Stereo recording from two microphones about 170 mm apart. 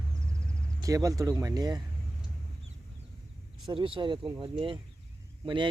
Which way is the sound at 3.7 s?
30° right (ahead or behind).